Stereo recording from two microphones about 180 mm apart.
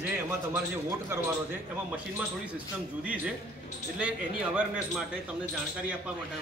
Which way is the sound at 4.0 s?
5° right (ahead or behind).